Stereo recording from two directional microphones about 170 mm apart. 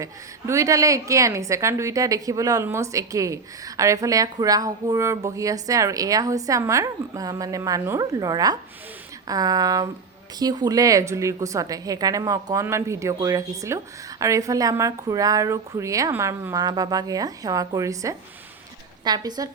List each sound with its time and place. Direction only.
0.0 s a woman's voice: 20° right (ahead or behind)